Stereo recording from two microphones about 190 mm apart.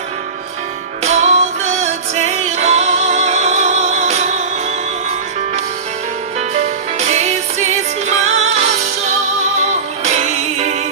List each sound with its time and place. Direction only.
1.0 s music: 35° right (ahead or behind)
6.5 s music: 35° right (ahead or behind)